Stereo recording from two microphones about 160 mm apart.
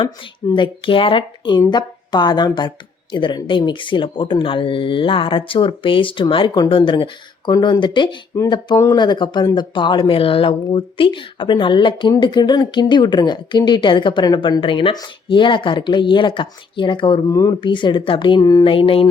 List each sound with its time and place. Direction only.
0.5 s speech: 30° left (ahead or behind)